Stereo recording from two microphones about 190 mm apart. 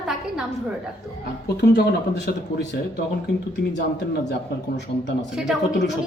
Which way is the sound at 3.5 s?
65° left (ahead or behind).